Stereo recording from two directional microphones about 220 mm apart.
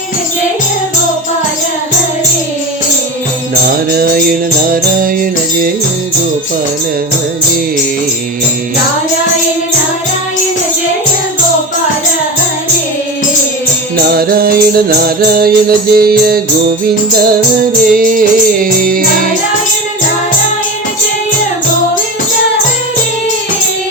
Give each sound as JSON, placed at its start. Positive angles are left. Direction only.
{"t": 3.7, "sound": "music", "side_deg": -45}
{"t": 14.1, "sound": "music", "side_deg": -45}